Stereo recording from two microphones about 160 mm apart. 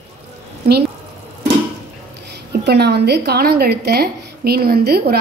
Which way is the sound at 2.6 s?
90° right.